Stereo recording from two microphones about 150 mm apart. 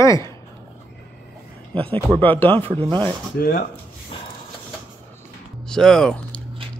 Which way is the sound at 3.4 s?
70° left (ahead or behind).